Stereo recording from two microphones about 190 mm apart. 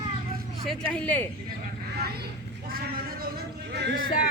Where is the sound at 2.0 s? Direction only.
55° right (ahead or behind).